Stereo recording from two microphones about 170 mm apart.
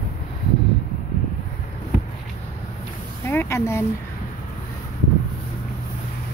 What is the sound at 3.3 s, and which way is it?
Speech, 15° left (ahead or behind).